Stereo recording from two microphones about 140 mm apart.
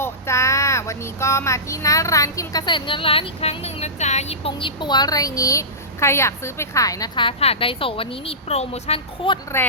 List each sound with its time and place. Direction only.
0.0 s speech: 20° left (ahead or behind)
7.3 s a woman's voice: 45° left (ahead or behind)